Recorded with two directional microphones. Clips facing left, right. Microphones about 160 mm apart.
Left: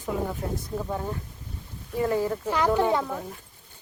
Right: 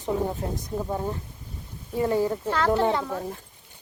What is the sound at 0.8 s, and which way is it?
Speech, 15° right (ahead or behind).